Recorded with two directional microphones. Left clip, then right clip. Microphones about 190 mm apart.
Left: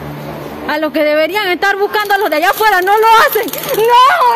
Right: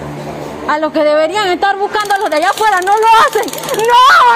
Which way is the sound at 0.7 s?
35° left (ahead or behind).